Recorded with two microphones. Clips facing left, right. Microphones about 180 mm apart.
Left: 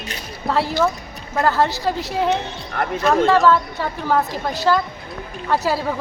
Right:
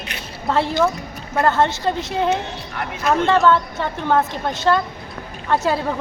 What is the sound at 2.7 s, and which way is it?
Speech, 45° left (ahead or behind).